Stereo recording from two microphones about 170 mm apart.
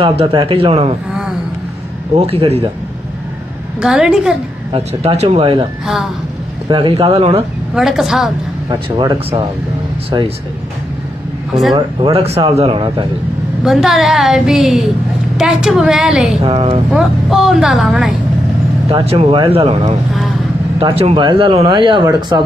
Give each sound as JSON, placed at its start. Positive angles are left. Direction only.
{"t": 0.0, "sound": "speech", "side_deg": -30}
{"t": 2.1, "sound": "speech", "side_deg": -35}
{"t": 3.8, "sound": "a woman's voice", "side_deg": -5}
{"t": 4.7, "sound": "speech", "side_deg": -35}
{"t": 6.7, "sound": "speech", "side_deg": -30}
{"t": 7.7, "sound": "a woman's voice", "side_deg": -5}
{"t": 8.6, "sound": "speech", "side_deg": -25}
{"t": 11.7, "sound": "speech", "side_deg": -30}
{"t": 13.7, "sound": "a woman's voice", "side_deg": 0}
{"t": 16.4, "sound": "speech", "side_deg": -35}
{"t": 16.9, "sound": "a woman's voice", "side_deg": -5}
{"t": 18.9, "sound": "speech", "side_deg": -35}